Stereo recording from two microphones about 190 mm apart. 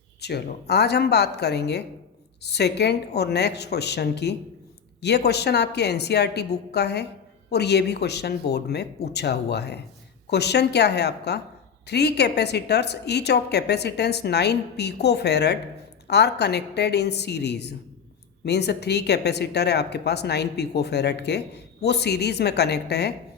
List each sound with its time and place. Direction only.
0.2 s a woman's voice: 60° left (ahead or behind)